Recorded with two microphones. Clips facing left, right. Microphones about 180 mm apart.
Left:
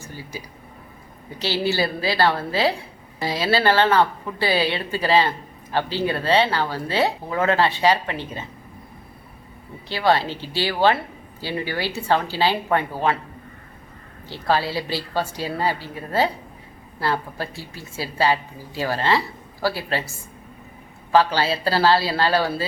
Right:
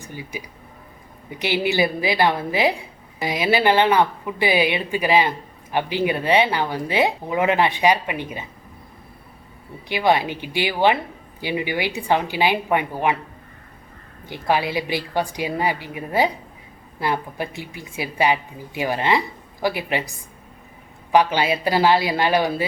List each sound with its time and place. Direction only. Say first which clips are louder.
0.0 s speech: right 2 dB; 15° right (ahead or behind)
9.9 s speech: right 1 dB; 15° right (ahead or behind)
14.3 s speech: right 1 dB; 15° right (ahead or behind)